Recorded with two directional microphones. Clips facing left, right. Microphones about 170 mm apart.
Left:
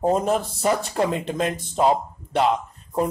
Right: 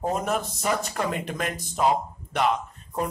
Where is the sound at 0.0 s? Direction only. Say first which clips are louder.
Left 6 dB; 30° left (ahead or behind).